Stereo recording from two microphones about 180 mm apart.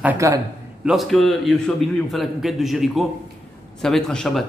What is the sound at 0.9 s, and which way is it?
A man's voice, centre (ahead or behind).